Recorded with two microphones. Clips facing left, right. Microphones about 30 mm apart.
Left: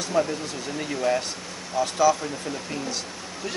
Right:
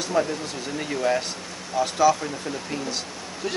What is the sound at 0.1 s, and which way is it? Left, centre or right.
Speech, centre.